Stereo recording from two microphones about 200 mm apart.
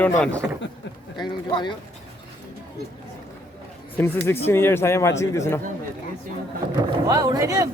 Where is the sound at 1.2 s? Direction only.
20° left (ahead or behind).